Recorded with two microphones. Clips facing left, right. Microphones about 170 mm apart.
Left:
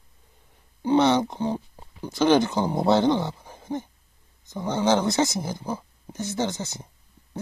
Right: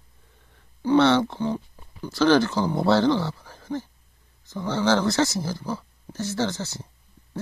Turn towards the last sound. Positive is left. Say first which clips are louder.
# right 1 dB
turn(degrees=20)  # may be behind; listen again after turning